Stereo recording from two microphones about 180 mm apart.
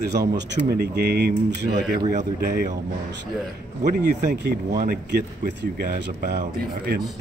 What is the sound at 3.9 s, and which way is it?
Speech, 65° right (ahead or behind).